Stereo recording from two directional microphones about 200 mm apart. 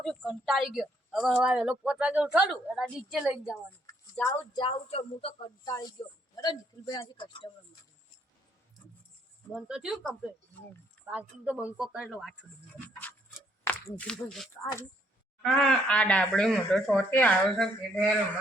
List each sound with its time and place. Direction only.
0.0 s a woman's voice: centre (ahead or behind)
3.5 s speech: 15° left (ahead or behind)
9.5 s a woman's voice: centre (ahead or behind)
14.0 s a woman's voice: 5° left (ahead or behind)